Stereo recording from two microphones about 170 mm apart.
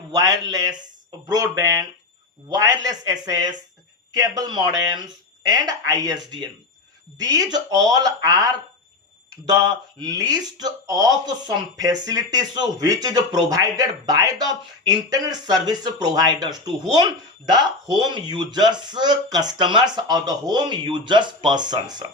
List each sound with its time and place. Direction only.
0.1 s speech: 20° right (ahead or behind)
7.2 s speech: 25° right (ahead or behind)